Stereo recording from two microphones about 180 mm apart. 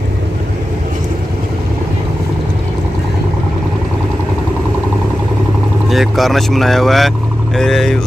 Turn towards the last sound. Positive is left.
turn(degrees=0)  # may be behind; listen again after turning